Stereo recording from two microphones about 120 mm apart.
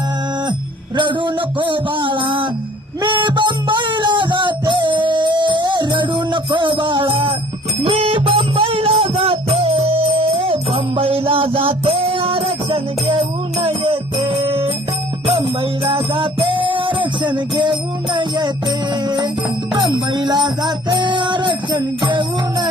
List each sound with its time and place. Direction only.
0.9 s a sound: 40° right (ahead or behind)
3.0 s music: 40° right (ahead or behind)
15.9 s music: 45° right (ahead or behind)